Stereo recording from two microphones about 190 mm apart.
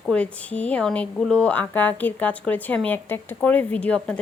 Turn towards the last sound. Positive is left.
turn(degrees=5)  # may be behind; listen again after turning